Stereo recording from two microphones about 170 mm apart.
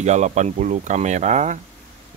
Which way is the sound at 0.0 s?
40° right (ahead or behind).